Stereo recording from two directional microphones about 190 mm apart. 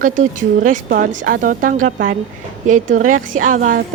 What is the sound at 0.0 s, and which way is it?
A woman's voice, 45° right (ahead or behind).